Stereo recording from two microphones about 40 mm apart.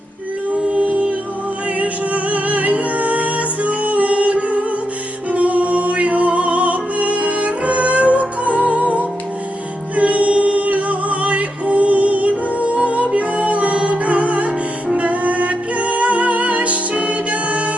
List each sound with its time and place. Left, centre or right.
1.8 s music: right